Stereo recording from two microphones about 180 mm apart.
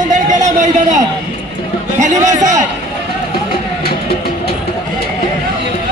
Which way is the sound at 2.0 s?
40° right (ahead or behind).